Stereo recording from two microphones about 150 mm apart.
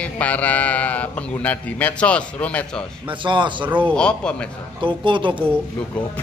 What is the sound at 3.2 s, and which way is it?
Speech, 35° right (ahead or behind).